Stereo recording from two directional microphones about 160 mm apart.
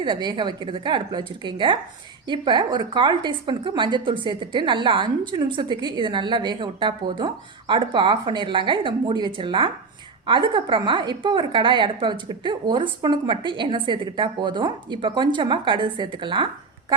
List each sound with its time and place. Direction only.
0.0 s a woman's voice: 30° right (ahead or behind)